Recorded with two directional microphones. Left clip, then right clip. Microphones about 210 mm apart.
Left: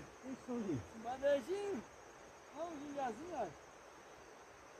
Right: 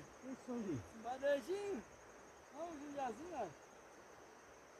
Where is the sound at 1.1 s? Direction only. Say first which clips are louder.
Left 3 dB; 20° right (ahead or behind).